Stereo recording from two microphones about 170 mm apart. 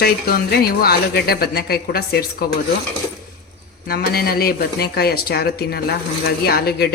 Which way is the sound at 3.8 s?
65° left (ahead or behind).